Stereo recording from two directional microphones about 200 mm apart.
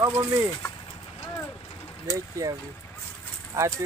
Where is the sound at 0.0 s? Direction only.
10° right (ahead or behind).